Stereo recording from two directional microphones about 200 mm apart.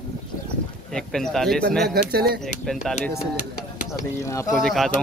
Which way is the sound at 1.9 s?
50° right (ahead or behind).